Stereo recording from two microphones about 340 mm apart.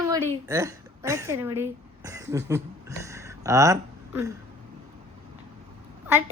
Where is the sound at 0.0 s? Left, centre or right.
Centre.